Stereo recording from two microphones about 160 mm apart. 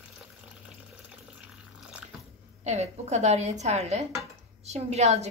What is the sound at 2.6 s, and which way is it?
A woman's voice, 45° right (ahead or behind).